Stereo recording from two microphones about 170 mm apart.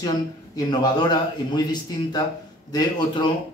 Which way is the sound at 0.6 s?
25° left (ahead or behind).